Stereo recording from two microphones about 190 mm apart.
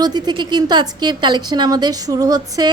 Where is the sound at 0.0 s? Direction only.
20° right (ahead or behind).